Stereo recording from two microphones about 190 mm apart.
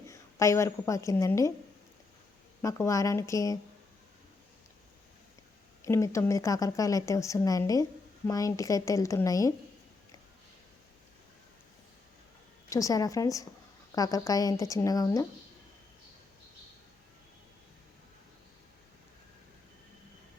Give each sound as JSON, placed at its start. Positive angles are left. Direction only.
{"t": 0.1, "sound": "a woman's voice", "side_deg": 15}
{"t": 2.6, "sound": "a woman's voice", "side_deg": 15}
{"t": 5.8, "sound": "a woman's voice", "side_deg": 15}
{"t": 12.7, "sound": "a woman's voice", "side_deg": 20}